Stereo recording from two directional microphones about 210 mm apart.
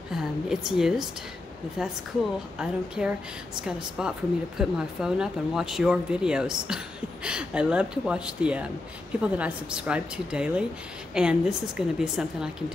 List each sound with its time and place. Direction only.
0.1 s a woman's voice: centre (ahead or behind)